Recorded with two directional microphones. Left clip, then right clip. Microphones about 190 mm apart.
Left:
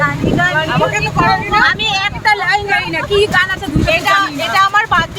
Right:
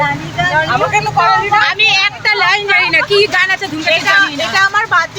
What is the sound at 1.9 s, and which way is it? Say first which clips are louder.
Speech: right 2 dB; 5° left (ahead or behind).